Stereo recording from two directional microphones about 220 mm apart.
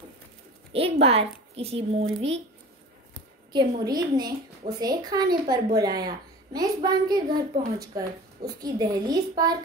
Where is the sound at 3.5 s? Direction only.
20° right (ahead or behind).